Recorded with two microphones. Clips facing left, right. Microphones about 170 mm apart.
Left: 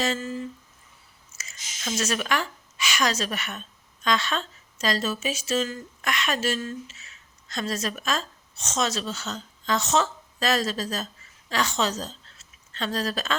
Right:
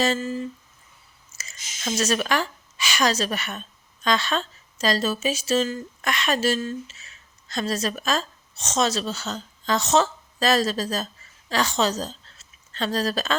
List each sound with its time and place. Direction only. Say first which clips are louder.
0.0 s speech: right 4 dB; 30° right (ahead or behind)
1.4 s a woman's voice: right 1 dB; 35° right (ahead or behind)